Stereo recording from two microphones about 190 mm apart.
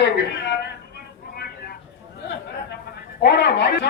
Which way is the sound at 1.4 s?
55° left (ahead or behind).